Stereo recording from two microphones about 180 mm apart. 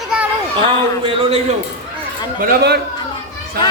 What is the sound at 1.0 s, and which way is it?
Speech, 30° right (ahead or behind).